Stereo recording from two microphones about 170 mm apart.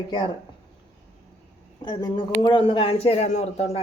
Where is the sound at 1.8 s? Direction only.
25° left (ahead or behind).